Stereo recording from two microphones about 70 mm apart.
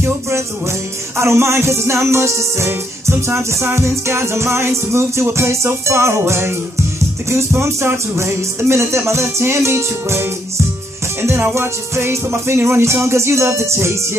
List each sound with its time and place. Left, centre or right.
1.1 s music: right
11.5 s music: right